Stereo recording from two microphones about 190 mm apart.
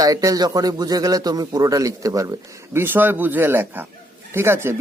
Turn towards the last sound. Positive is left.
turn(degrees=-15)  # may be behind; listen again after turning